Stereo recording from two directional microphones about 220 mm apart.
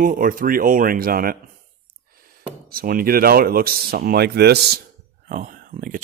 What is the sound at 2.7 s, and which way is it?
Speech, 40° right (ahead or behind).